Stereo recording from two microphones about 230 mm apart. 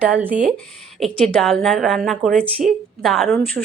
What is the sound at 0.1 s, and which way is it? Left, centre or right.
A woman's voice, centre.